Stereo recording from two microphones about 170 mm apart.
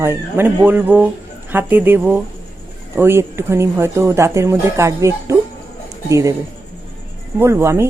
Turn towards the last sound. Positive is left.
turn(degrees=-15)  # may be behind; listen again after turning